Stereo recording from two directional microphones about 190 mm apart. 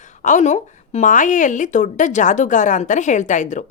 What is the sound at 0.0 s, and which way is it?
Speech, 40° left (ahead or behind).